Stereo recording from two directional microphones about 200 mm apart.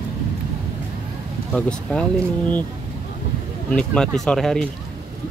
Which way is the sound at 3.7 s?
5° left (ahead or behind).